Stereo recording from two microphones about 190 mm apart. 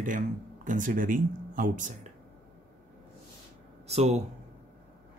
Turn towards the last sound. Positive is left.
turn(degrees=-35)  # may be behind; listen again after turning